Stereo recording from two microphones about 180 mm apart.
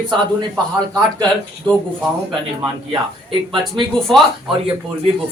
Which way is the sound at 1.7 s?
25° right (ahead or behind).